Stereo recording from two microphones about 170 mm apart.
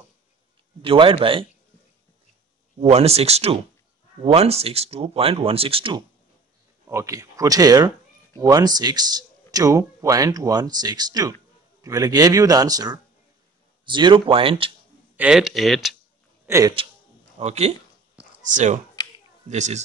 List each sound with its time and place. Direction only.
0.8 s speech: 30° right (ahead or behind)
2.8 s speech: 40° right (ahead or behind)
6.9 s speech: 15° right (ahead or behind)
15.1 s speech: 5° right (ahead or behind)
16.4 s a man's voice: 15° right (ahead or behind)
17.4 s speech: 40° right (ahead or behind)